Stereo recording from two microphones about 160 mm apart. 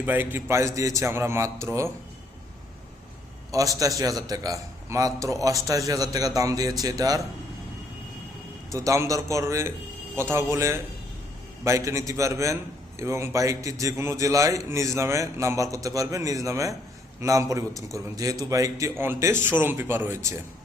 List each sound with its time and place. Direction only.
0.0 s a man's voice: 10° right (ahead or behind)
3.5 s a man's voice: 20° right (ahead or behind)
8.7 s a man's voice: 20° right (ahead or behind)